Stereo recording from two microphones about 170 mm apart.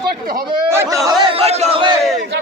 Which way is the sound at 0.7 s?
15° right (ahead or behind).